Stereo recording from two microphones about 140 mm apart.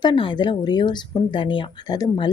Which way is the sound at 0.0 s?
35° left (ahead or behind).